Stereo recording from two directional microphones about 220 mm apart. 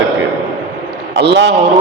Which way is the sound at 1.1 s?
50° right (ahead or behind).